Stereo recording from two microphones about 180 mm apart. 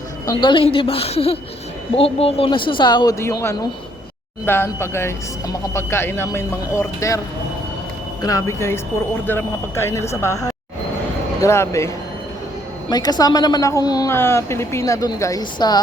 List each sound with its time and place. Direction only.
0.3 s a woman's voice: 25° left (ahead or behind)
8.2 s speech: 20° left (ahead or behind)
12.9 s speech: 20° left (ahead or behind)